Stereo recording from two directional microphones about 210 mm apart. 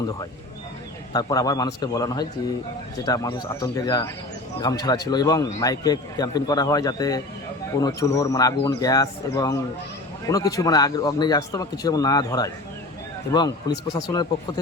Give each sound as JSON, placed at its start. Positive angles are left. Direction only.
{"t": 1.1, "sound": "a man's voice", "side_deg": 15}